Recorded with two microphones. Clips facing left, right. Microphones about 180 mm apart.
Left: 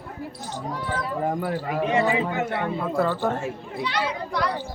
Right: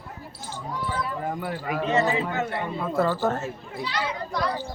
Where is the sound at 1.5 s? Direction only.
35° left (ahead or behind).